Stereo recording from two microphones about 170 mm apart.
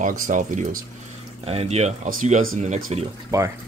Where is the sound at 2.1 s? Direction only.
50° right (ahead or behind).